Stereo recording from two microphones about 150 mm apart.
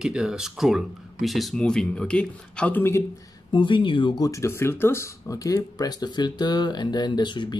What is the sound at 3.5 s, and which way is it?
Speech, 35° left (ahead or behind).